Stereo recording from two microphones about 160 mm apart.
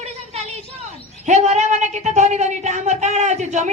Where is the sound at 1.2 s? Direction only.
45° right (ahead or behind).